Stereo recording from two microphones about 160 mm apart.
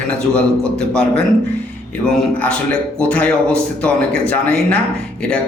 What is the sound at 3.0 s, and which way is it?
A man's voice, 10° left (ahead or behind).